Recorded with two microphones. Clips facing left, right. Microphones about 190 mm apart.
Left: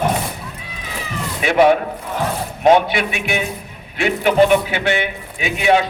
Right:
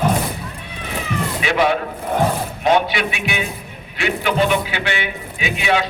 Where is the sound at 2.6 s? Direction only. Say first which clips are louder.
Left 4 dB; 50° left (ahead or behind).